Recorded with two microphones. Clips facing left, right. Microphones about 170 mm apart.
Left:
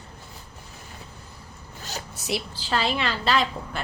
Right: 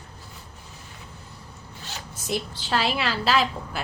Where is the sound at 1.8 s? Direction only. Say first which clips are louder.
Left 4 dB; 40° left (ahead or behind).